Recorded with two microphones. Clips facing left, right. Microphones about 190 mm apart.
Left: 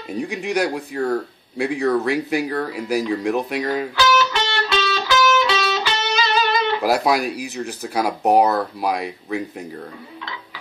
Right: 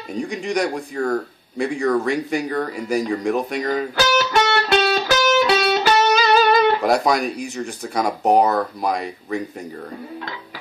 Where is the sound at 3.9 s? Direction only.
45° right (ahead or behind).